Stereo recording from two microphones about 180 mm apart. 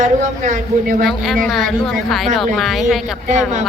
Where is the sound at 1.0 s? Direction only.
Centre (ahead or behind).